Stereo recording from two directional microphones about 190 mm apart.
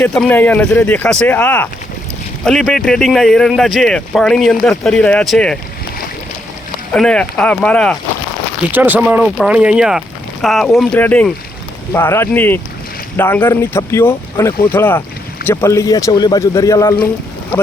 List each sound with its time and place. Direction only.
0.0 s speech: 5° left (ahead or behind)
6.9 s speech: 5° left (ahead or behind)
8.7 s speech: 10° right (ahead or behind); by 16.9 s 15° left (ahead or behind)